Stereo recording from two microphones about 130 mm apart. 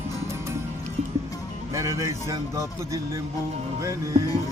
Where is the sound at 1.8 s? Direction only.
25° right (ahead or behind).